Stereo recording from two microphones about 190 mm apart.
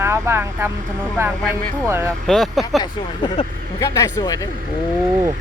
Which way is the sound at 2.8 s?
25° left (ahead or behind).